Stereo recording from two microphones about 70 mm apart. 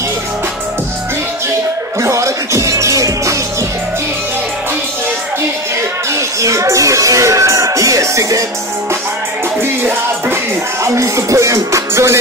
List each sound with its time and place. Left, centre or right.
2.0 s music: right
6.1 s a sound: right
9.6 s music: right
11.0 s music: right